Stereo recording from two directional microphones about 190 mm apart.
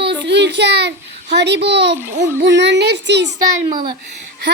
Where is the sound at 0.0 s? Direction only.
65° right (ahead or behind).